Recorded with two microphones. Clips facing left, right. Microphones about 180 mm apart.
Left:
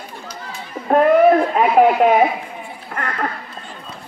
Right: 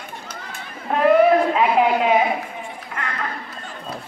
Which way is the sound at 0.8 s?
45° left (ahead or behind).